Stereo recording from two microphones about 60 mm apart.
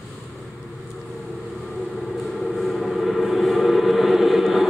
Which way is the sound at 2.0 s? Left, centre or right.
Centre.